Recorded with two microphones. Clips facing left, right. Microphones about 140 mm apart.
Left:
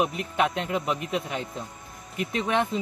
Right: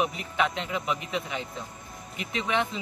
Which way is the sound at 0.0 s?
Centre (ahead or behind).